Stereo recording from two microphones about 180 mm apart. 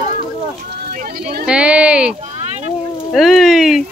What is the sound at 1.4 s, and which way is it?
Sheep, 5° right (ahead or behind).